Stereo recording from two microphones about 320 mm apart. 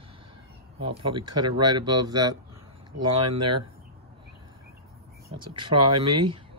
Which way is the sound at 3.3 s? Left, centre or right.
Right.